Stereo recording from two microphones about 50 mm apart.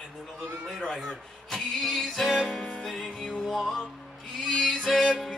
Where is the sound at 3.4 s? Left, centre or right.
Centre.